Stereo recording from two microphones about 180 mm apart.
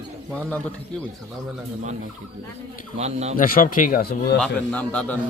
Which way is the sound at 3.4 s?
50° left (ahead or behind).